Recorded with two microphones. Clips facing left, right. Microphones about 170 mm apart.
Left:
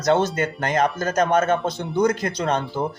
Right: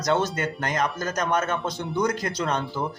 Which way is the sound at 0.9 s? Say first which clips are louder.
Left 6 dB; 50° left (ahead or behind).